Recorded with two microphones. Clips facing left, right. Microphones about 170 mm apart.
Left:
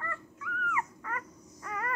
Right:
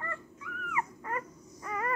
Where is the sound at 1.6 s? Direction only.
10° right (ahead or behind).